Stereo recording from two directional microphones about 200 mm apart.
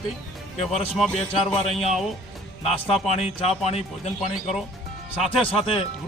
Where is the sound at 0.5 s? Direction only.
30° left (ahead or behind).